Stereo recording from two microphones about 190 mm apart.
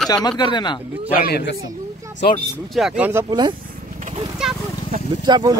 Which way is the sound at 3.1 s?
15° right (ahead or behind).